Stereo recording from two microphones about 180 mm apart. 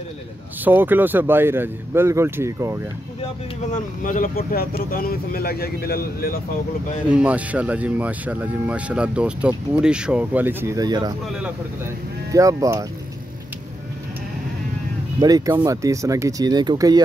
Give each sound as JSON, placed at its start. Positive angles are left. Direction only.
{"t": 0.7, "sound": "speech", "side_deg": -10}
{"t": 3.7, "sound": "speech", "side_deg": 45}
{"t": 7.1, "sound": "speech", "side_deg": -5}
{"t": 12.3, "sound": "speech", "side_deg": -20}
{"t": 15.1, "sound": "speech", "side_deg": -20}